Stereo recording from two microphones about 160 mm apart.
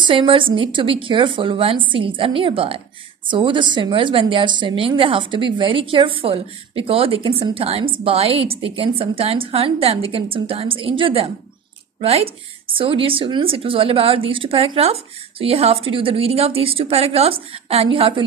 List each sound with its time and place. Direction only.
0.0 s a woman's voice: 30° right (ahead or behind)